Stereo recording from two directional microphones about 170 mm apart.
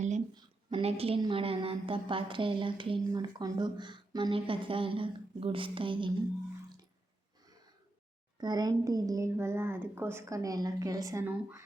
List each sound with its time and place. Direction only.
0.3 s a woman's voice: 35° right (ahead or behind)
8.4 s a woman's voice: 25° right (ahead or behind)